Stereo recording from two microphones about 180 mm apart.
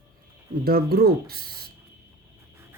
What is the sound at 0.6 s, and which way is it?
Speech, 60° right (ahead or behind).